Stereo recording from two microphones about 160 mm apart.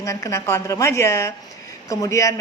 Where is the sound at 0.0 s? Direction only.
20° left (ahead or behind).